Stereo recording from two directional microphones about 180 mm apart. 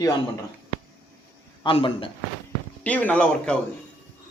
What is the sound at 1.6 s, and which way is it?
Speech, 30° left (ahead or behind).